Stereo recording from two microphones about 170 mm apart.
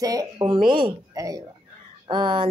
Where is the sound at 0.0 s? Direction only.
20° right (ahead or behind).